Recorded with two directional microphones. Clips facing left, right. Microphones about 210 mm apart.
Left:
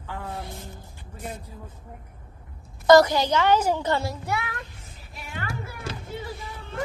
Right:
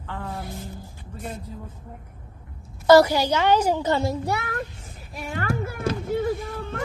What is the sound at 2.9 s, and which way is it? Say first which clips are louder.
A woman's voice: right 1 dB; 10° right (ahead or behind).